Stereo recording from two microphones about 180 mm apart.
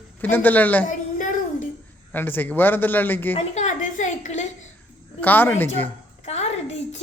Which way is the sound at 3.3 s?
35° left (ahead or behind).